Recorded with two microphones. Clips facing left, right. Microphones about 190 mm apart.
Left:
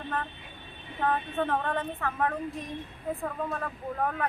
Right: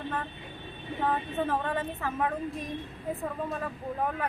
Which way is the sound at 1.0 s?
5° right (ahead or behind).